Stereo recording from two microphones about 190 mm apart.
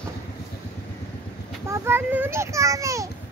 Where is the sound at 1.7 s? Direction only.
10° right (ahead or behind).